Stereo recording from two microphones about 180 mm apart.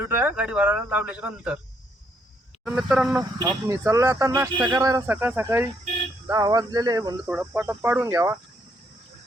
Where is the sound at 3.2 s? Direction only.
20° right (ahead or behind).